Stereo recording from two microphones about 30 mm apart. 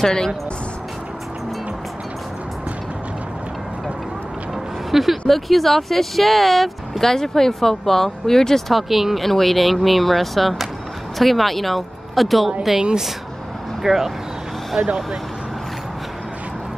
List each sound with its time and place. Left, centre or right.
0.0 s speech: left
4.9 s speech: centre
7.0 s speech: centre
8.8 s speech: centre
9.2 s speech: centre
13.8 s speech: centre
14.8 s speech: right